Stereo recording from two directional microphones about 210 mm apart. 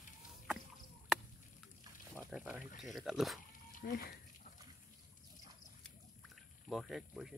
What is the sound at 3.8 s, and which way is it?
Speech, 45° left (ahead or behind).